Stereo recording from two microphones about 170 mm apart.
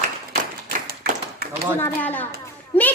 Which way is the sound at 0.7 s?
60° right (ahead or behind).